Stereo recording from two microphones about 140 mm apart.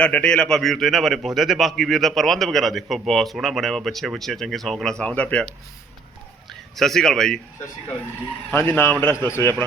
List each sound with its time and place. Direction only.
0.0 s a man's voice: 10° left (ahead or behind)
6.5 s speech: centre (ahead or behind)
8.4 s a man's voice: 15° left (ahead or behind)